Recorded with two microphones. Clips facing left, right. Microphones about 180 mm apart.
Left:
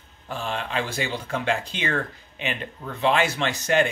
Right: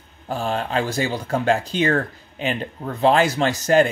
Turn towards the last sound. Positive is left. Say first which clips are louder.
# right 5 dB
turn(degrees=-40)  # may be behind; listen again after turning